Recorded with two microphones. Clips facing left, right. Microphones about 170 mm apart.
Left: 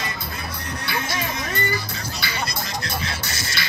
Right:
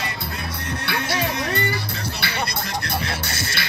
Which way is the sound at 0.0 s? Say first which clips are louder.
Right 1 dB; 65° right (ahead or behind).